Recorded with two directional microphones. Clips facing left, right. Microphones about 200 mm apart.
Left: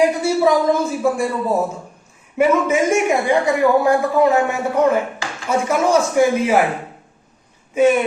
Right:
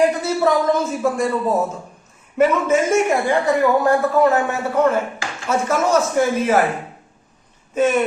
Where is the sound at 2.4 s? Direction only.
15° left (ahead or behind).